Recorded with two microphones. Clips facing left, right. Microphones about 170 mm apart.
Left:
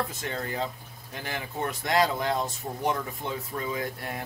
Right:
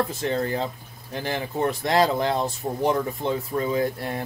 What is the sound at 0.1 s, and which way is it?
Speech, 30° right (ahead or behind).